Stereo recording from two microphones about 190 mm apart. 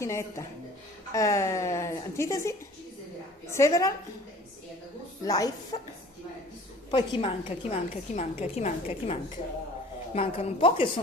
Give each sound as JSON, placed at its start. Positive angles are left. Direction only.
{"t": 0.0, "sound": "a woman's voice", "side_deg": 15}
{"t": 5.2, "sound": "a woman's voice", "side_deg": 20}
{"t": 6.9, "sound": "a woman's voice", "side_deg": 25}